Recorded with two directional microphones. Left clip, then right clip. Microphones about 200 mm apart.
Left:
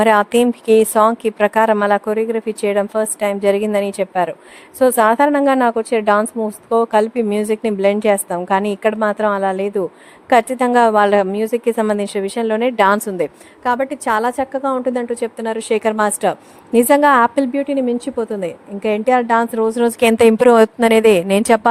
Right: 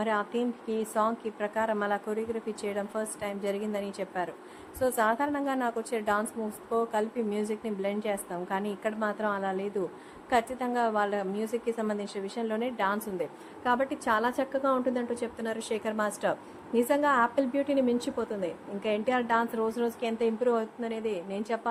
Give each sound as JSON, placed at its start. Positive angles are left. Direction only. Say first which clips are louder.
{"t": 0.0, "sound": "a woman's voice", "louder": "left 17 dB", "side_deg": 55}
{"t": 13.7, "sound": "a woman's voice", "louder": "left 10 dB", "side_deg": 40}